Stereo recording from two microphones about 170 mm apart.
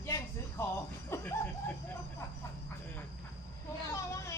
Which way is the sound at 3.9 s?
20° left (ahead or behind).